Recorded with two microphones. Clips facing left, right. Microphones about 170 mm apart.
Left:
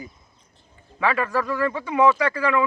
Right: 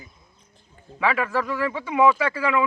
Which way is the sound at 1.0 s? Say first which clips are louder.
Left 1 dB; 10° right (ahead or behind).